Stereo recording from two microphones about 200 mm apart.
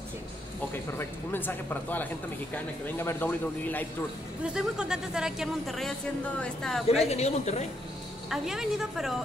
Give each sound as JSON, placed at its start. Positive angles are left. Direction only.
{"t": 0.9, "sound": "speech", "side_deg": 10}
{"t": 4.6, "sound": "speech", "side_deg": -5}
{"t": 7.1, "sound": "a woman's voice", "side_deg": 30}
{"t": 8.3, "sound": "speech", "side_deg": 0}